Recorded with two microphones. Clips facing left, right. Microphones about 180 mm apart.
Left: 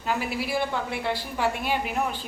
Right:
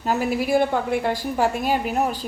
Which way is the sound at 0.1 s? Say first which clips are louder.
Right 7 dB; 45° right (ahead or behind).